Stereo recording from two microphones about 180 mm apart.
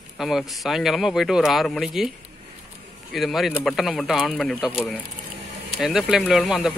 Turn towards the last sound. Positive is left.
turn(degrees=0)  # may be behind; listen again after turning